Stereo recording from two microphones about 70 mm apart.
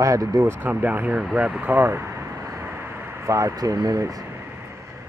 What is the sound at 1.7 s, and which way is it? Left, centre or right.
Vehicle, right.